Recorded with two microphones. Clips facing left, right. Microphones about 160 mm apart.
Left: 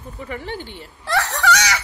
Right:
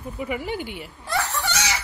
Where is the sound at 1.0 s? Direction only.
85° left.